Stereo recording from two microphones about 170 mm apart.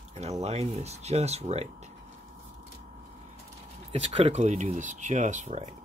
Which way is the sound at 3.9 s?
40° right (ahead or behind).